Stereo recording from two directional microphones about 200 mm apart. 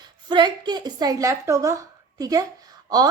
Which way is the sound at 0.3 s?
20° right (ahead or behind).